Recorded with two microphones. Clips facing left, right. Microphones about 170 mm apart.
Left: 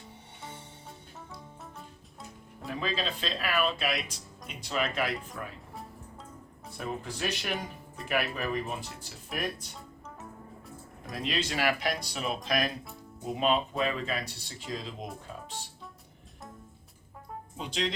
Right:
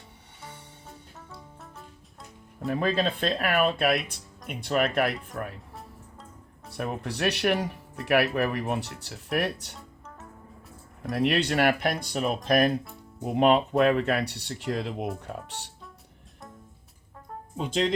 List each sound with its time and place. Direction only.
2.6 s speech: 55° right (ahead or behind)
6.7 s speech: 65° right (ahead or behind)
11.1 s speech: 65° right (ahead or behind)
17.6 s speech: 50° right (ahead or behind)